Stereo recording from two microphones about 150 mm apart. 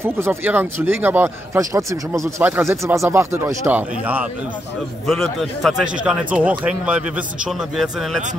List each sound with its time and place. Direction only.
0.0 s speech: 15° right (ahead or behind)
5.0 s a man's voice: centre (ahead or behind)